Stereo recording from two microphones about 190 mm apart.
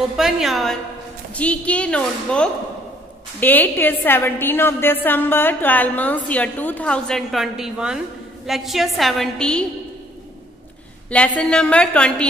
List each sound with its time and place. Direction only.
0.2 s a woman's voice: centre (ahead or behind)
11.1 s a woman's voice: 5° left (ahead or behind)